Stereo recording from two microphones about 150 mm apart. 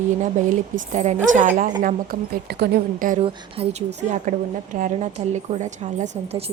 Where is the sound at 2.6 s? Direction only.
75° right (ahead or behind).